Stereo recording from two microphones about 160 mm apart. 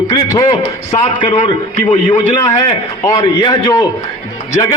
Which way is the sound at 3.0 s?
20° left (ahead or behind).